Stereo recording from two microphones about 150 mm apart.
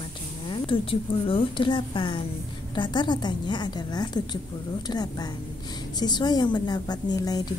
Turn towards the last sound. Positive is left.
turn(degrees=25)  # may be behind; listen again after turning